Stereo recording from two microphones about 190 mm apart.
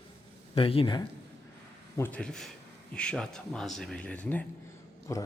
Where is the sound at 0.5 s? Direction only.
25° left (ahead or behind).